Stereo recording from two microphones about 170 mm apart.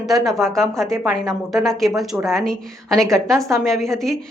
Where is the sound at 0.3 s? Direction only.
Centre (ahead or behind).